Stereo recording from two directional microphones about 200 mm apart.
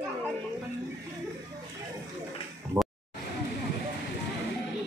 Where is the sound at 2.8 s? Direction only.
15° right (ahead or behind).